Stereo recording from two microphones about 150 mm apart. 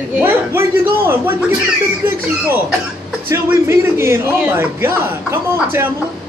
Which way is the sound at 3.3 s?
15° right (ahead or behind).